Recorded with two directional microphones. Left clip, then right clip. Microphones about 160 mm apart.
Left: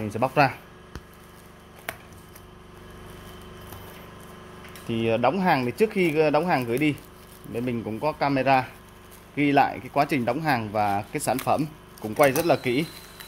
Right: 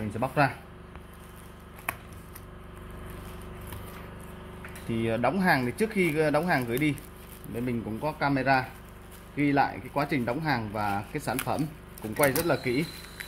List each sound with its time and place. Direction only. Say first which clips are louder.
0.1 s speech: left 5 dB; 80° left
4.9 s speech: left 5 dB; 70° left (ahead or behind)
9.3 s speech: left 5 dB; 90° left
11.4 s speech: left 7 dB; 70° left (ahead or behind)
12.2 s speech: left 5 dB; 90° left